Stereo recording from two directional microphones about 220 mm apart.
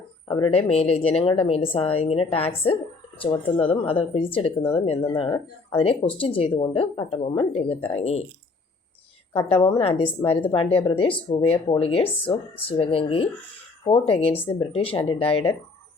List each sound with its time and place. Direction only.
0.3 s a woman's voice: 20° left (ahead or behind)
9.3 s a woman's voice: 20° left (ahead or behind)